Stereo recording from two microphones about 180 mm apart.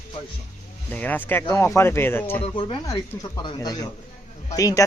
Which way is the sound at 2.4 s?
30° left (ahead or behind).